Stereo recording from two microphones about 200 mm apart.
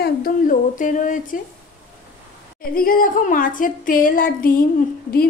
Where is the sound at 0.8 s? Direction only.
40° left (ahead or behind).